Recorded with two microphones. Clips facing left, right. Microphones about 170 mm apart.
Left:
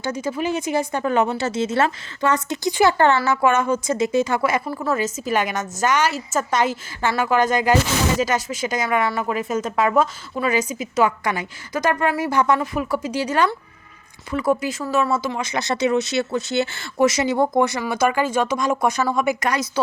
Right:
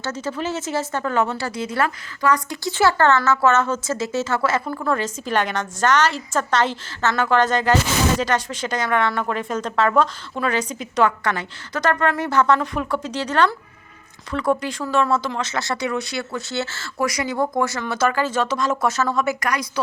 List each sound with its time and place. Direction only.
0.0 s speech: 10° left (ahead or behind)